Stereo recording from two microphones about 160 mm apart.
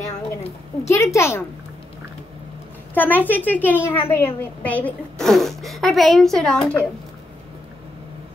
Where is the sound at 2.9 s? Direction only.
10° left (ahead or behind).